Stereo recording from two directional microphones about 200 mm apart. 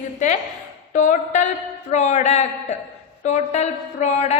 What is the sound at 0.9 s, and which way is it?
A woman's voice, 40° left (ahead or behind).